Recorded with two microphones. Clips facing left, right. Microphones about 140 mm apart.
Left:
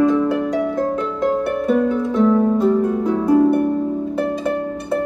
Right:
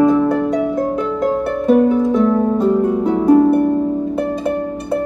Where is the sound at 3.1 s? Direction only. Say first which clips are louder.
Right 5 dB; 20° right (ahead or behind).